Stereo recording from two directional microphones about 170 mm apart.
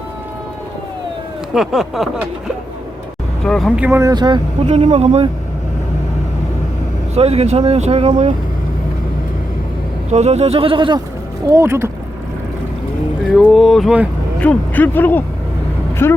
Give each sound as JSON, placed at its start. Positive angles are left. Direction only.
{"t": 1.5, "sound": "speech", "side_deg": 0}
{"t": 3.4, "sound": "speech", "side_deg": 5}
{"t": 3.8, "sound": "speech", "side_deg": -10}
{"t": 4.1, "sound": "speech", "side_deg": -25}
{"t": 4.6, "sound": "speech", "side_deg": -40}
{"t": 7.2, "sound": "speech", "side_deg": -35}
{"t": 10.1, "sound": "speech", "side_deg": -40}
{"t": 11.5, "sound": "speech", "side_deg": -15}
{"t": 13.3, "sound": "speech", "side_deg": 0}
{"t": 14.4, "sound": "speech", "side_deg": 10}